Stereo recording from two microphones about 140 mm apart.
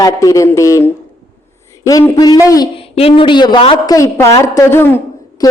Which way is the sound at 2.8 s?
45° left (ahead or behind).